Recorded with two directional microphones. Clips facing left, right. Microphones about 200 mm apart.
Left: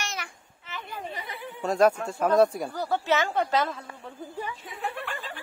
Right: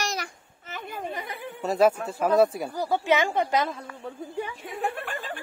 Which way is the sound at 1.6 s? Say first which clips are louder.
Even; 5° right (ahead or behind).